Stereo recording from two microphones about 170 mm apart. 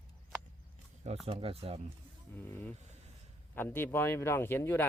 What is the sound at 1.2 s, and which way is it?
Speech, 35° right (ahead or behind).